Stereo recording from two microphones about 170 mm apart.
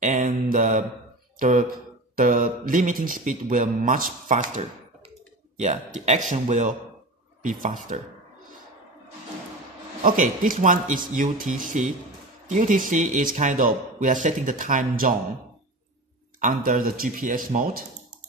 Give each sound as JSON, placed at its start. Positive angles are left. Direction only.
{"t": 0.0, "sound": "mantra", "side_deg": -50}
{"t": 1.4, "sound": "speech", "side_deg": -55}
{"t": 10.0, "sound": "speech", "side_deg": -50}
{"t": 16.3, "sound": "speech", "side_deg": -55}